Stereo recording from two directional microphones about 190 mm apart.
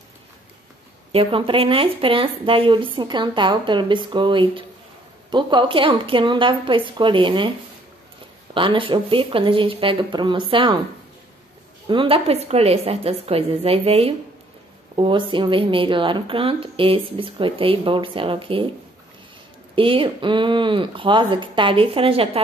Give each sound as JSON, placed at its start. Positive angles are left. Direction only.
{"t": 1.1, "sound": "speech", "side_deg": -30}
{"t": 8.5, "sound": "speech", "side_deg": -25}
{"t": 11.9, "sound": "a woman's voice", "side_deg": -30}
{"t": 19.7, "sound": "speech", "side_deg": -25}